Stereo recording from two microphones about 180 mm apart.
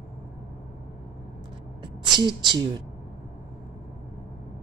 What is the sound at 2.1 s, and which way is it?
Speech, 25° right (ahead or behind).